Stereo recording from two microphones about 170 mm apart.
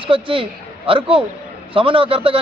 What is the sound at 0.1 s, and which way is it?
Speech, 30° right (ahead or behind).